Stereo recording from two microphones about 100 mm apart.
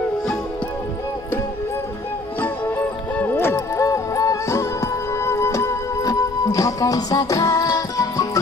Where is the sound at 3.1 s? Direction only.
20° left (ahead or behind).